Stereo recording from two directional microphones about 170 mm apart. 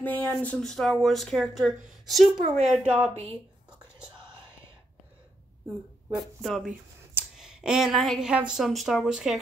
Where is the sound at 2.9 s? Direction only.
35° right (ahead or behind).